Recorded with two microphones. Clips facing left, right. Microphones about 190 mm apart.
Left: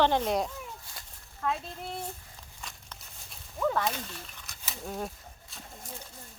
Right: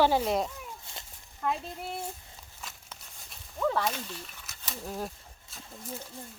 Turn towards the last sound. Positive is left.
turn(degrees=0)  # may be behind; listen again after turning